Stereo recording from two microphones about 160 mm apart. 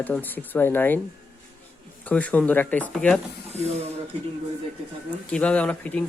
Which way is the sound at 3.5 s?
40° right (ahead or behind).